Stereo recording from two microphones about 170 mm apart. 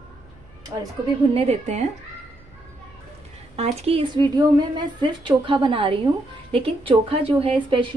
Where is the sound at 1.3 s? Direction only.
40° right (ahead or behind).